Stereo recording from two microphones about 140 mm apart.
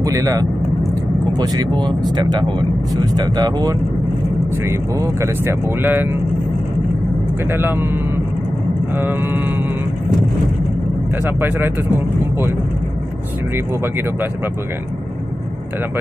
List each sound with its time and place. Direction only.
0.0 s speech: 25° right (ahead or behind)
7.5 s mantra: 15° right (ahead or behind)
11.2 s mantra: 15° right (ahead or behind)